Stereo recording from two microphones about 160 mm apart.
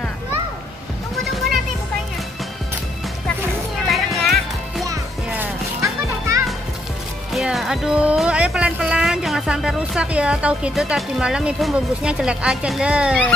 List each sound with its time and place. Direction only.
3.8 s music: centre (ahead or behind)
5.3 s children playing: 15° right (ahead or behind)
7.3 s speech: centre (ahead or behind)